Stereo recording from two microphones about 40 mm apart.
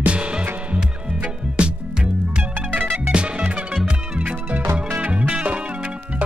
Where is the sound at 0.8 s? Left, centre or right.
Right.